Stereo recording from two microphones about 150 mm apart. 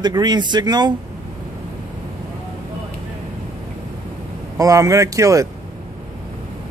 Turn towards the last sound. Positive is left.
turn(degrees=-20)  # may be behind; listen again after turning